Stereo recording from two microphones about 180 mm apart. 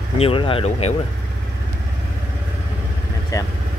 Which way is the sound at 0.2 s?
30° left (ahead or behind).